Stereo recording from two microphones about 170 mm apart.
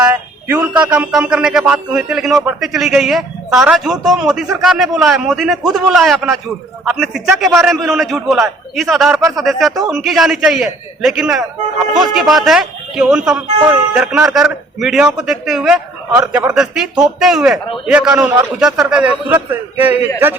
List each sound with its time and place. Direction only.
0.0 s a man's voice: 15° right (ahead or behind)
16.2 s a man's voice: 15° right (ahead or behind)
16.5 s a man's voice: 5° right (ahead or behind)